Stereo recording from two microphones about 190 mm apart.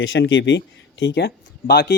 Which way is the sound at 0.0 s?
80° left.